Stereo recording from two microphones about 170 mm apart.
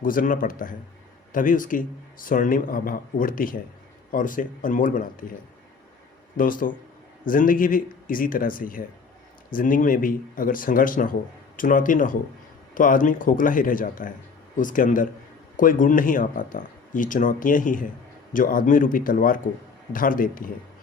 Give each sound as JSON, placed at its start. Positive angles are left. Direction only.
{"t": 0.0, "sound": "a man's voice", "side_deg": 55}
{"t": 6.3, "sound": "a man's voice", "side_deg": 55}